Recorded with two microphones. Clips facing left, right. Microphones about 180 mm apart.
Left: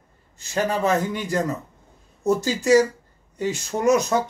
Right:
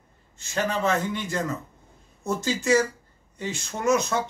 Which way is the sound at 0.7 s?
40° left (ahead or behind).